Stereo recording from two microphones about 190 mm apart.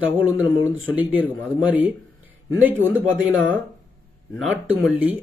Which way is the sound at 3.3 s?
90° right.